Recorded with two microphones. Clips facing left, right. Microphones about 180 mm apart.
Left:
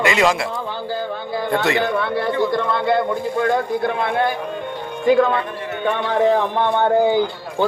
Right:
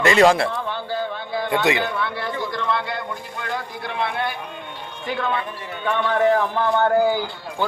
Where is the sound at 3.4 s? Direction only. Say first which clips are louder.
Left 10 dB; 50° left (ahead or behind).